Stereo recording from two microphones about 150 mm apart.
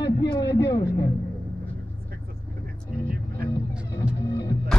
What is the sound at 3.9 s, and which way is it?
Music, 25° left (ahead or behind).